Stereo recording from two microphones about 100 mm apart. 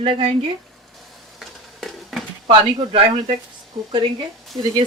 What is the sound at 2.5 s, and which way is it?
Speech, 60° right (ahead or behind).